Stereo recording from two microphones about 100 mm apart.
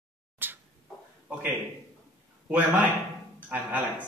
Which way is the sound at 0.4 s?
20° right (ahead or behind).